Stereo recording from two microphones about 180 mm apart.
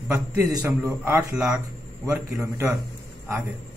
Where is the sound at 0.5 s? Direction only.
15° right (ahead or behind).